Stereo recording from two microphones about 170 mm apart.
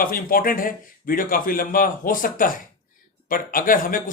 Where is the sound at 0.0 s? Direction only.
55° left (ahead or behind).